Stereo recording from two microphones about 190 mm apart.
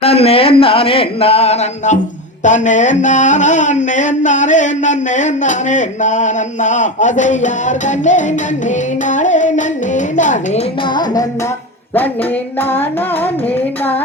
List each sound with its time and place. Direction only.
0.0 s speech: 30° left (ahead or behind)
2.4 s a sound: 40° left (ahead or behind)
10.8 s music: 20° left (ahead or behind)
12.5 s music: 10° left (ahead or behind)